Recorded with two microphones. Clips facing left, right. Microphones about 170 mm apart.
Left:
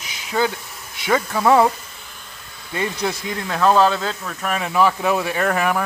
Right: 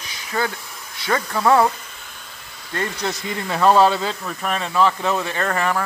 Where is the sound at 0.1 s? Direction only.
15° left (ahead or behind).